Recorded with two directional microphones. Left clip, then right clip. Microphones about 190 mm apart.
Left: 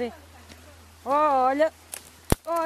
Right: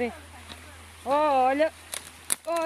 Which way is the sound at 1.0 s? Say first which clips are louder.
Left 1 dB; 20° left (ahead or behind).